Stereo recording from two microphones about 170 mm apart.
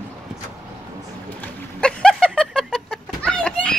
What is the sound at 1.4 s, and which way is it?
Chicken, 5° left (ahead or behind).